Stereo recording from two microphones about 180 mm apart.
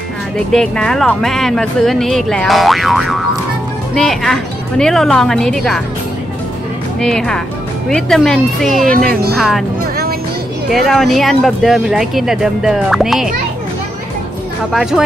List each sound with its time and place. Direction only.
0.5 s speech: 5° left (ahead or behind)
7.0 s speech: 5° left (ahead or behind)
8.8 s speech: 55° right (ahead or behind)
10.7 s speech: centre (ahead or behind)
14.7 s speech: centre (ahead or behind)